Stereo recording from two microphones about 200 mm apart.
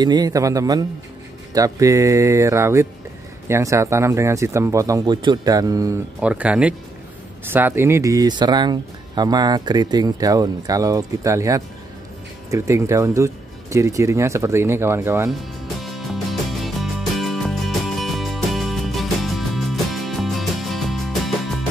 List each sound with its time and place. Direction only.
0.0 s speech: 20° right (ahead or behind)
6.2 s speech: 5° right (ahead or behind)
15.8 s music: centre (ahead or behind)